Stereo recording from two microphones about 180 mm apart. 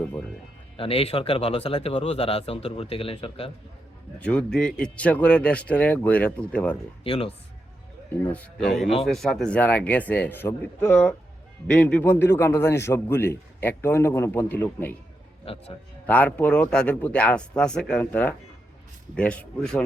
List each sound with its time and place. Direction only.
0.8 s speech: 30° left (ahead or behind)
4.2 s a man's voice: 5° left (ahead or behind)
7.0 s speech: 30° left (ahead or behind)
8.2 s a man's voice: 10° left (ahead or behind)
15.5 s speech: 35° left (ahead or behind)
16.0 s a man's voice: 10° left (ahead or behind)